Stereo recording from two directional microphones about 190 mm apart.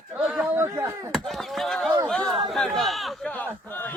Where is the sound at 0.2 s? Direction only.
Centre (ahead or behind).